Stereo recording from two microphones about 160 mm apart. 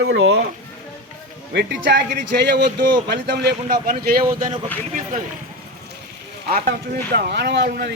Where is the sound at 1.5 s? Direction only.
90° right.